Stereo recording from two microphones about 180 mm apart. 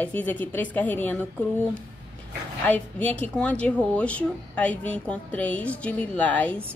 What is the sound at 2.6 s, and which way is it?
Speech, 10° left (ahead or behind).